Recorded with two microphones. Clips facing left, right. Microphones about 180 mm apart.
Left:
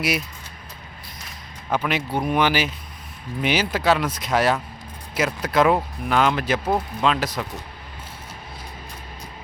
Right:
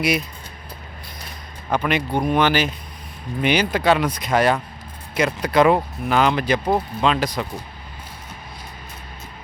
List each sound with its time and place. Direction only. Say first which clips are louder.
1.7 s speech: right 2 dB; 5° left (ahead or behind)